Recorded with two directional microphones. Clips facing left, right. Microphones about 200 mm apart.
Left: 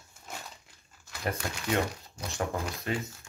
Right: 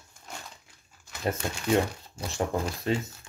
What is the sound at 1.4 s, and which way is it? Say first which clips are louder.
Speech: right 5 dB; 25° right (ahead or behind).